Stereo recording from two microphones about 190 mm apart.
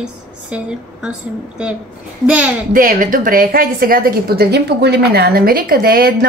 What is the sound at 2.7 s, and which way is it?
Speech, 45° right (ahead or behind).